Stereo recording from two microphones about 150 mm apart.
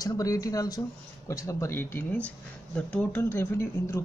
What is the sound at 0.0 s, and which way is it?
Speech, 25° left (ahead or behind).